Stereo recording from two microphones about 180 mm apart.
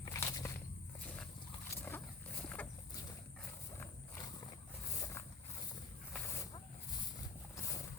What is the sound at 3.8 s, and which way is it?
Wild animals, 20° left (ahead or behind).